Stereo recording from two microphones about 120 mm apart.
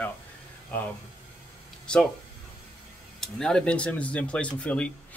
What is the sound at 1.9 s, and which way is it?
Speech, 5° left (ahead or behind).